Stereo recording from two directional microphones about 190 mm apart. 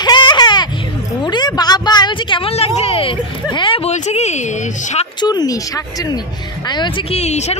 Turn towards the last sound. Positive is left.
turn(degrees=35)  # may be behind; listen again after turning